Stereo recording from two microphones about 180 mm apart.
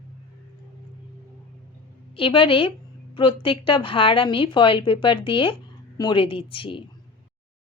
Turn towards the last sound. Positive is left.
turn(degrees=30)  # may be behind; listen again after turning